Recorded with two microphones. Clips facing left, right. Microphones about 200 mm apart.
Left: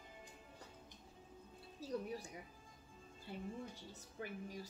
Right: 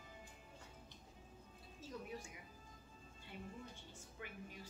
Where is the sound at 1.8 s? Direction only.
35° left (ahead or behind).